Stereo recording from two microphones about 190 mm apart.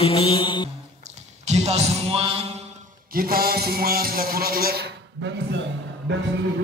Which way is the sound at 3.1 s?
50° right (ahead or behind).